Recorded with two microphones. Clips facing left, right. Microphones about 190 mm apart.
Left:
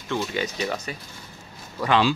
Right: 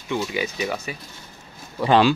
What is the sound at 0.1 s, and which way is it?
Speech, 10° right (ahead or behind).